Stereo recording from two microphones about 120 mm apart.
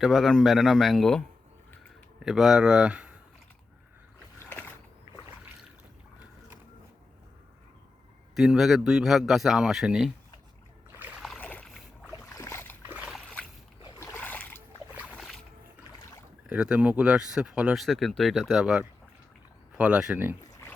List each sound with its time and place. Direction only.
0.0 s speech: centre (ahead or behind)
2.2 s speech: 5° right (ahead or behind)
4.4 s mechanisms: 20° left (ahead or behind)
8.4 s speech: centre (ahead or behind)
10.9 s a sound: 15° right (ahead or behind)
11.3 s boat: 15° left (ahead or behind)
12.8 s splash: 15° right (ahead or behind)
13.1 s a sound: 5° left (ahead or behind)
14.0 s a sound: 20° left (ahead or behind)
15.1 s boat: centre (ahead or behind)
16.5 s speech: 10° right (ahead or behind)
20.5 s pig: 20° left (ahead or behind)